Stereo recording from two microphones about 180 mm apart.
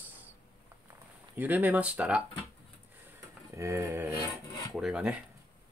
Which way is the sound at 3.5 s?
15° right (ahead or behind).